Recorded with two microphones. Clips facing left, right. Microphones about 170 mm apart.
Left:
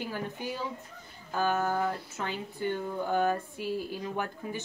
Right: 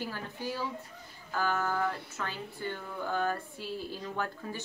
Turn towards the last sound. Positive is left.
turn(degrees=15)  # may be behind; listen again after turning